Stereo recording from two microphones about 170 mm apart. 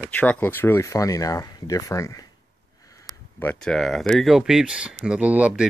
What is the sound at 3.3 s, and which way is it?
Speech, 5° left (ahead or behind).